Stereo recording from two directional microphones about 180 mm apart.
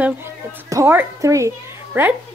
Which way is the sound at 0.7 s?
15° right (ahead or behind).